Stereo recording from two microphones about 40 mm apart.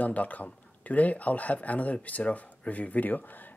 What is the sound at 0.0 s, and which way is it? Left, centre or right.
Speech, left.